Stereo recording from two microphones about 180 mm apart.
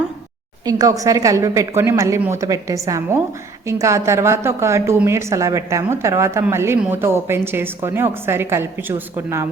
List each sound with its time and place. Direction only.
0.6 s a woman's voice: 20° right (ahead or behind)